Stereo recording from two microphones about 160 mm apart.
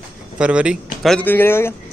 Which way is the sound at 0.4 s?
5° right (ahead or behind).